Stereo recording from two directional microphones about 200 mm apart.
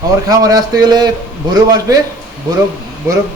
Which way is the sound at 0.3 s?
20° right (ahead or behind).